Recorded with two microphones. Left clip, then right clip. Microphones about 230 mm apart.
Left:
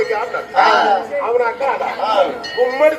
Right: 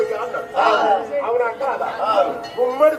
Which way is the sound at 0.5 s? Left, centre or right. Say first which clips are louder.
Left 4 dB; left.